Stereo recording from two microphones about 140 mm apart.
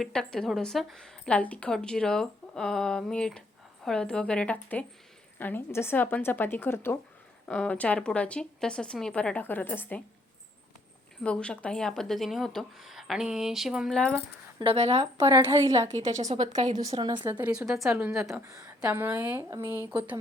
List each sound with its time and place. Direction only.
0.0 s a woman's voice: 5° left (ahead or behind)
11.2 s a woman's voice: 5° left (ahead or behind)
14.6 s speech: 45° right (ahead or behind)
15.3 s a woman's voice: 20° right (ahead or behind)
16.3 s speech: 55° right (ahead or behind)
17.0 s speech: 35° right (ahead or behind)
17.2 s a woman's voice: 10° right (ahead or behind)
18.3 s a woman's voice: 20° right (ahead or behind)